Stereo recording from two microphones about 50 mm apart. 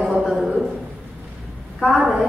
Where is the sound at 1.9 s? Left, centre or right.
Centre.